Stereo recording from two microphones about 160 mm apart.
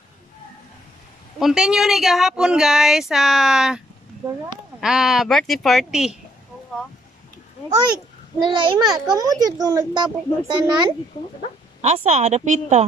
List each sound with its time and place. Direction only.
1.4 s speech: 5° right (ahead or behind)
8.5 s a child's voice: 30° right (ahead or behind)
11.8 s a woman's voice: 45° right (ahead or behind)